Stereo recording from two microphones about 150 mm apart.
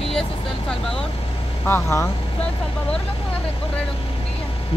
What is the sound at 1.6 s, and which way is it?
Speech, 15° left (ahead or behind).